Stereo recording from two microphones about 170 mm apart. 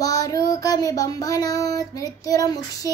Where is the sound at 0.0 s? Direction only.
20° left (ahead or behind).